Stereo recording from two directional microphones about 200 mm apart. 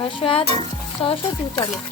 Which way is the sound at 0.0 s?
25° left (ahead or behind).